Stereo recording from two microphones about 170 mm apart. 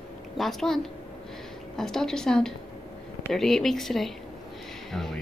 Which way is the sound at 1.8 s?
5° left (ahead or behind).